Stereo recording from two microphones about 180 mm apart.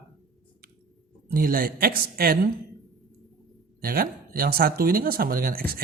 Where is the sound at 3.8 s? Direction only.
55° right (ahead or behind).